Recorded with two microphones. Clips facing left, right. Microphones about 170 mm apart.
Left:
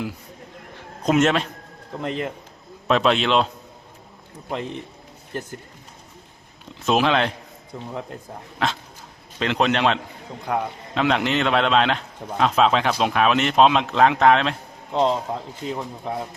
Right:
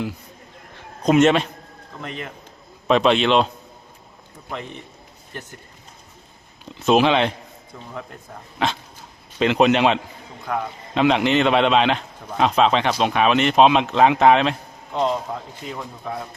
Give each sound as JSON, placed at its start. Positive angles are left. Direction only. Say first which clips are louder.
{"t": 1.0, "sound": "speech", "louder": "right 3 dB", "side_deg": 0}
{"t": 2.0, "sound": "a man's voice", "louder": "left 6 dB", "side_deg": 30}
{"t": 2.8, "sound": "speech", "louder": "right 2 dB", "side_deg": 0}
{"t": 4.4, "sound": "a man's voice", "louder": "left 4 dB", "side_deg": 35}
{"t": 6.8, "sound": "speech", "louder": "right 3 dB", "side_deg": 0}
{"t": 8.6, "sound": "speech", "louder": "right 2 dB", "side_deg": 0}
{"t": 10.5, "sound": "a man's voice", "louder": "left 1 dB", "side_deg": 15}
{"t": 10.9, "sound": "speech", "louder": "right 4 dB", "side_deg": 0}
{"t": 14.9, "sound": "a man's voice", "louder": "left 2 dB", "side_deg": 30}